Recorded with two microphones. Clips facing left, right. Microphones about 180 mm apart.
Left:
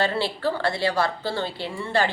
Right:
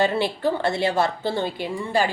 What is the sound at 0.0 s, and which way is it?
A woman's voice, 20° right (ahead or behind).